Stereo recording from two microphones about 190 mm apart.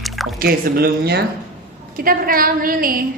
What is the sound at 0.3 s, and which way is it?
A woman's voice, 50° right (ahead or behind).